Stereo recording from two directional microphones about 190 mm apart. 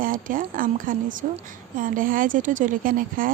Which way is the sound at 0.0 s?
45° right (ahead or behind).